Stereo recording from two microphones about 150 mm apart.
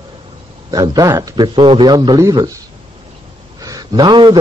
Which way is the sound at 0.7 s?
25° right (ahead or behind).